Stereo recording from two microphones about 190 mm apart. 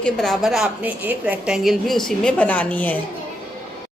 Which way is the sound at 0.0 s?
Centre (ahead or behind).